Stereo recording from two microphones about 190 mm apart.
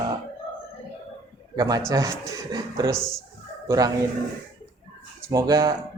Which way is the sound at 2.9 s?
5° left (ahead or behind).